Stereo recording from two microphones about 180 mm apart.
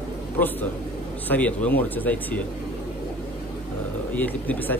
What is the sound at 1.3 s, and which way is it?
Speech, 10° left (ahead or behind).